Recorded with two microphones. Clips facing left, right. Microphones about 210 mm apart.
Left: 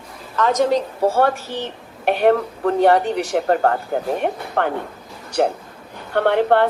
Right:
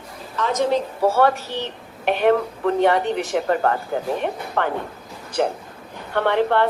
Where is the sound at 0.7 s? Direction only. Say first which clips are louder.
Left 1 dB; 45° left (ahead or behind).